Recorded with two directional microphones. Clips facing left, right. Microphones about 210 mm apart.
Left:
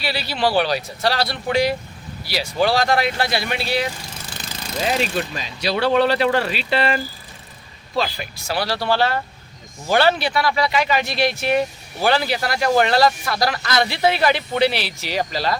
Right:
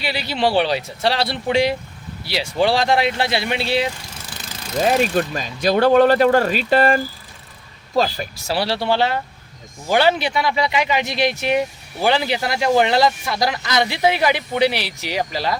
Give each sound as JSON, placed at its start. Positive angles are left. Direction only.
{"t": 0.0, "sound": "speech", "side_deg": -20}
{"t": 4.9, "sound": "speech", "side_deg": -50}
{"t": 8.6, "sound": "speech", "side_deg": -25}